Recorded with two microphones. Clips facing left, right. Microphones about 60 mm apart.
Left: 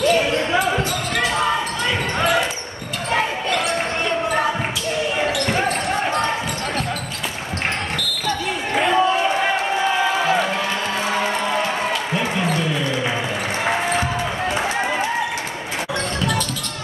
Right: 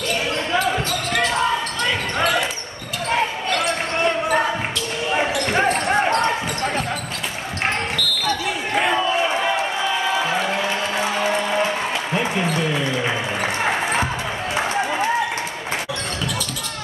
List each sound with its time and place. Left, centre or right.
0.5 s basketball bounce: centre
8.7 s crowd: centre